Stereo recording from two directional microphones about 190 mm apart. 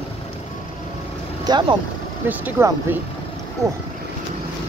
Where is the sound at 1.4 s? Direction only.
20° right (ahead or behind).